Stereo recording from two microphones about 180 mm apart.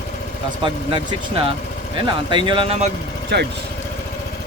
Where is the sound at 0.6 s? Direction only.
25° right (ahead or behind).